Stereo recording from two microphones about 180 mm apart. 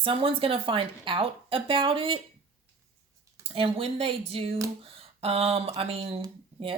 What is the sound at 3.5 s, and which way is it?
Speech, 30° right (ahead or behind).